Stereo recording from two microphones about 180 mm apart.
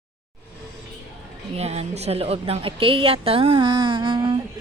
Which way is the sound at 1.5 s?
35° right (ahead or behind).